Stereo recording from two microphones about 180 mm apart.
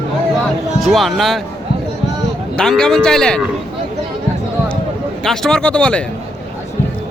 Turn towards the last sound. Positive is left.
turn(degrees=5)  # may be behind; listen again after turning